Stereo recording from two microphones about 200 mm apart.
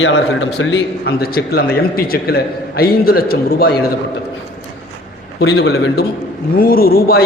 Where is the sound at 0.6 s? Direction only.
70° left (ahead or behind).